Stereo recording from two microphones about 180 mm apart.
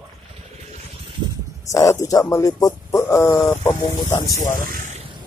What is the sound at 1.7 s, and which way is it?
Speech, 20° left (ahead or behind).